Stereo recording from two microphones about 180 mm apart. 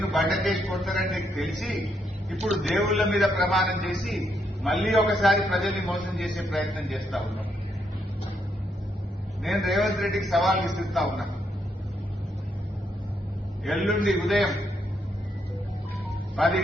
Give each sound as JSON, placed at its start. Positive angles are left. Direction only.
{"t": 0.0, "sound": "a man's voice", "side_deg": 0}
{"t": 9.4, "sound": "a man's voice", "side_deg": 0}
{"t": 13.7, "sound": "a man's voice", "side_deg": 0}
{"t": 16.4, "sound": "a man's voice", "side_deg": 0}